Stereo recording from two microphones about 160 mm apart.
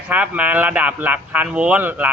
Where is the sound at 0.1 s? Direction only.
10° right (ahead or behind).